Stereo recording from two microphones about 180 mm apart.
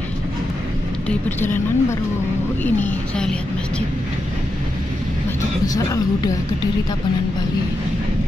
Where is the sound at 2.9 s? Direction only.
5° left (ahead or behind).